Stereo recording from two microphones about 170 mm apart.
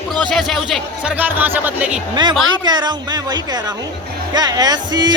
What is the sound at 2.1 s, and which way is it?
Speech, 25° right (ahead or behind).